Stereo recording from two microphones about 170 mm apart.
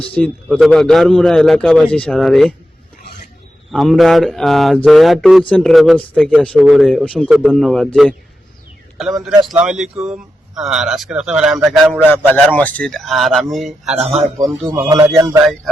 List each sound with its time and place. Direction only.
0.0 s speech: 5° left (ahead or behind)
3.7 s speech: centre (ahead or behind)
9.0 s a man's voice: centre (ahead or behind)
12.5 s speech: 10° left (ahead or behind)
13.9 s speech: 35° right (ahead or behind)
14.3 s speech: 20° right (ahead or behind)